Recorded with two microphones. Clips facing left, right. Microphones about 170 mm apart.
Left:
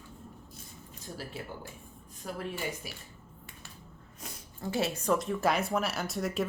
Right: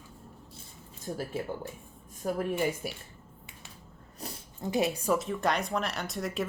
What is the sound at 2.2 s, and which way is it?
Speech, 50° right (ahead or behind).